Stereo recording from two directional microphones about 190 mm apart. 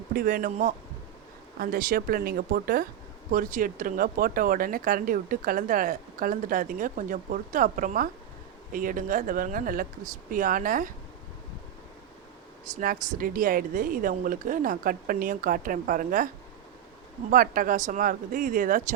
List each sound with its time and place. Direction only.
0.1 s speech: 50° right (ahead or behind)
12.7 s speech: 50° right (ahead or behind)
17.3 s speech: 50° right (ahead or behind)